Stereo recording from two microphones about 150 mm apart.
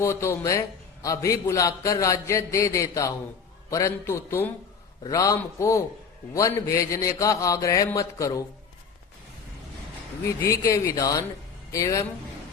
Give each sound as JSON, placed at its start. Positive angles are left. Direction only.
{"t": 0.0, "sound": "a man's voice", "side_deg": 20}
{"t": 10.2, "sound": "a man's voice", "side_deg": 20}